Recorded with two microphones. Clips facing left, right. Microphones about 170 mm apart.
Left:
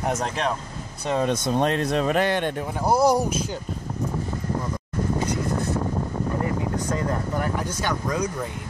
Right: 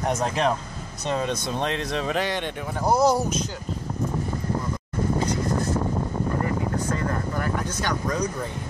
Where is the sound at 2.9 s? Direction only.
10° left (ahead or behind).